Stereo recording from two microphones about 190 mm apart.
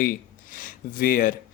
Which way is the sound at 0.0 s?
45° left (ahead or behind).